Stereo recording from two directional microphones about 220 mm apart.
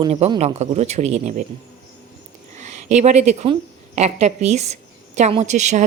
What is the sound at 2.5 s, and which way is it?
Speech, 30° right (ahead or behind).